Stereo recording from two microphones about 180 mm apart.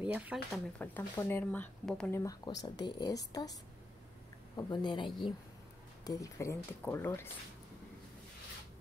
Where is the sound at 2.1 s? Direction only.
20° left (ahead or behind).